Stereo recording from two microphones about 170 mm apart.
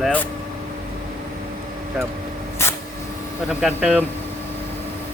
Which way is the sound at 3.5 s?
5° right (ahead or behind).